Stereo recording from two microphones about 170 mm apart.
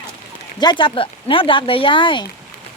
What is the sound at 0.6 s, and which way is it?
Speech, 25° left (ahead or behind).